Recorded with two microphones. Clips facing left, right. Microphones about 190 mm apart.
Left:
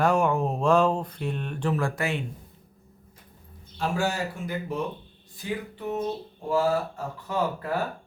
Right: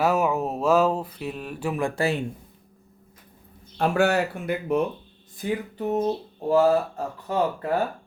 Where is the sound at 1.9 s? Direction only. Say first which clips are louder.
Right 4 dB; 35° right (ahead or behind).